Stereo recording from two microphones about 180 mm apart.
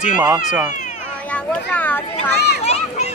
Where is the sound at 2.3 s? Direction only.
65° left (ahead or behind).